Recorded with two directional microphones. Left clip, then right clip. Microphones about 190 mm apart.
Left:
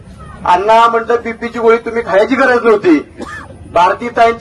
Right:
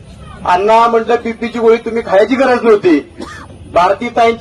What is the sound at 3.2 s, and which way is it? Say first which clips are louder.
Speech: left 2 dB; 50° left (ahead or behind).